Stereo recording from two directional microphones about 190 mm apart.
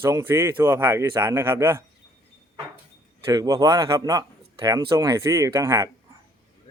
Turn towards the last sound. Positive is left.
turn(degrees=-15)  # may be behind; listen again after turning